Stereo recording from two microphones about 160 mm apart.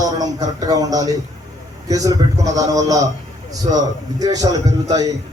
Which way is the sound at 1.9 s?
20° right (ahead or behind).